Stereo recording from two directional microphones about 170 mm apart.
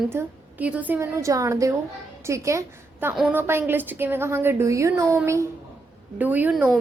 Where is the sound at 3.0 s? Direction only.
5° right (ahead or behind).